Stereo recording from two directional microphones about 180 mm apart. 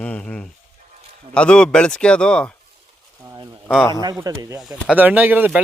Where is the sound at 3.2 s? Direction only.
15° right (ahead or behind).